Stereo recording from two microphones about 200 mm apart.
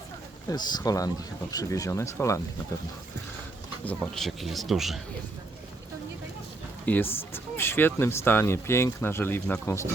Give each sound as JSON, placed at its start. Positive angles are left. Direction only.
{"t": 0.5, "sound": "speech", "side_deg": 20}
{"t": 3.8, "sound": "speech", "side_deg": 5}
{"t": 6.8, "sound": "speech", "side_deg": 10}